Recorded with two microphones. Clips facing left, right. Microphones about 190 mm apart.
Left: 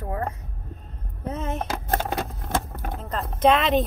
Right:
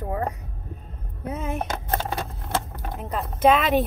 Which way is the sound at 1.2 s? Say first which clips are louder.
Even; 10° right (ahead or behind).